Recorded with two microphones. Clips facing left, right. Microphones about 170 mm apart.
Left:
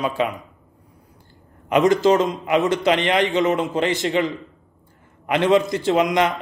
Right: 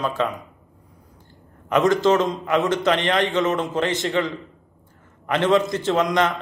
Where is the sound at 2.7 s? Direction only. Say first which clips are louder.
Left 1 dB; 15° left (ahead or behind).